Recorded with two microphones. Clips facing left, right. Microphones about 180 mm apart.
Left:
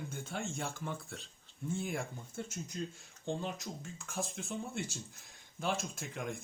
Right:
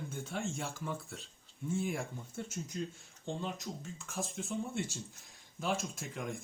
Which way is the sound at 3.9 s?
Centre (ahead or behind).